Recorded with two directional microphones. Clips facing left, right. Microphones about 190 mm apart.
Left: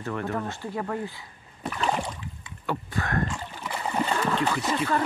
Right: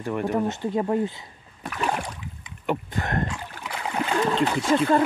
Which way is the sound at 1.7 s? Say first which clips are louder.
Even; 5° right (ahead or behind).